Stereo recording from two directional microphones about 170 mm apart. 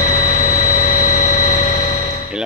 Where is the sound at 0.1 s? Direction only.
50° left (ahead or behind).